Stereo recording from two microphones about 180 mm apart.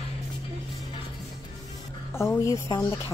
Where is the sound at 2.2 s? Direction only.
15° left (ahead or behind).